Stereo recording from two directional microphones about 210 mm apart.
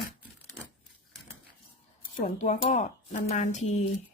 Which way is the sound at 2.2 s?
35° left (ahead or behind).